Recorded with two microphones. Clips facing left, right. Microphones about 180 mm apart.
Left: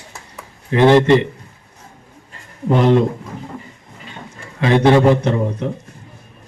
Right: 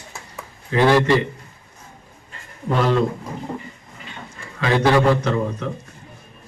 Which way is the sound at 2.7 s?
20° left (ahead or behind).